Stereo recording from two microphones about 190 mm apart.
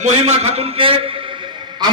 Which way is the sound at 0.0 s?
35° right (ahead or behind).